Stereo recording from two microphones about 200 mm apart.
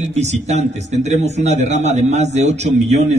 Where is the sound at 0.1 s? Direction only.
35° right (ahead or behind).